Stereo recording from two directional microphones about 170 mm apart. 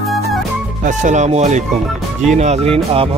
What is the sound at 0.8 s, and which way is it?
A man's voice, 45° right (ahead or behind).